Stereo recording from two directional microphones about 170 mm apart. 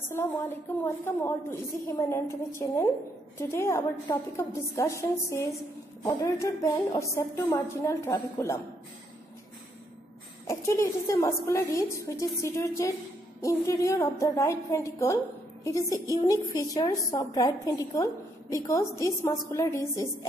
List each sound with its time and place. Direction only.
0.2 s speech: 15° left (ahead or behind)
10.4 s a woman's voice: 15° left (ahead or behind)